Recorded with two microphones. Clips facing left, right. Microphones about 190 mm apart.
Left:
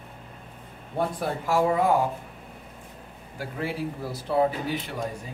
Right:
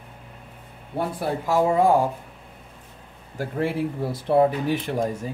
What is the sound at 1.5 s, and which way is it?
Speech, 25° right (ahead or behind).